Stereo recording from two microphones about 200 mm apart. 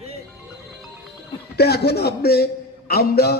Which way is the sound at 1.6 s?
55° left (ahead or behind).